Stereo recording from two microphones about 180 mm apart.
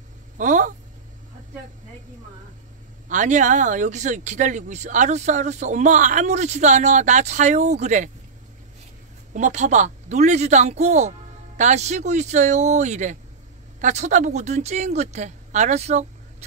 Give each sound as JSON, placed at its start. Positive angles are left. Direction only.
{"t": 0.4, "sound": "speech", "side_deg": -45}
{"t": 3.1, "sound": "speech", "side_deg": -45}
{"t": 9.3, "sound": "a woman's voice", "side_deg": -40}